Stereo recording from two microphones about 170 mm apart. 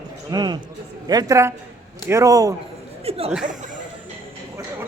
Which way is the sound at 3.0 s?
35° right (ahead or behind).